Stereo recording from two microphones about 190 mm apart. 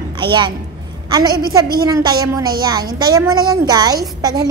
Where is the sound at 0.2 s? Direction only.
25° right (ahead or behind).